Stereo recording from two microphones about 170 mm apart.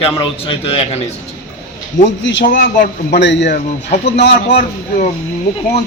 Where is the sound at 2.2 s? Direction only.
90° left.